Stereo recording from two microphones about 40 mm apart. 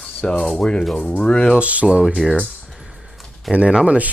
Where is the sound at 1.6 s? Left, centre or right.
Right.